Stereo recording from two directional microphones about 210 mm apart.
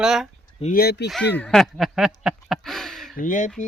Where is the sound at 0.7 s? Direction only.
50° left (ahead or behind).